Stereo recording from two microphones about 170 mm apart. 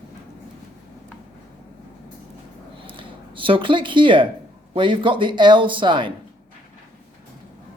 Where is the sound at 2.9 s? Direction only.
30° right (ahead or behind).